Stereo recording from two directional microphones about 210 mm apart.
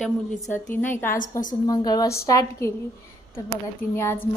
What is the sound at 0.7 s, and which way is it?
A woman's voice, 10° left (ahead or behind).